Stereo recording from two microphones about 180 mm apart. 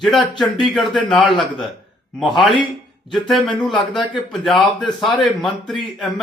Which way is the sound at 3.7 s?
25° left (ahead or behind).